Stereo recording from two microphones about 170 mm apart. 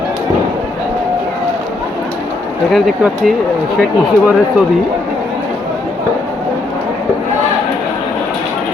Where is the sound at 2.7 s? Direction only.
Centre (ahead or behind).